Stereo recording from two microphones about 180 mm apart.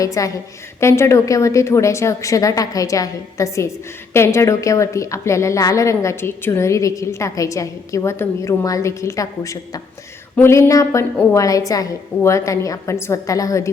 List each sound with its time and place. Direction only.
0.0 s a woman's voice: 20° left (ahead or behind)